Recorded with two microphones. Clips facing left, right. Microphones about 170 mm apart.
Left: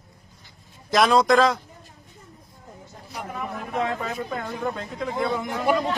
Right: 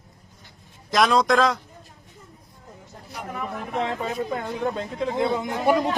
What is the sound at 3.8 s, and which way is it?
Speech, 20° right (ahead or behind).